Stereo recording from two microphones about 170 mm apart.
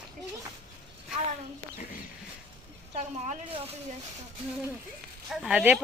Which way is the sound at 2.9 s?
40° right (ahead or behind).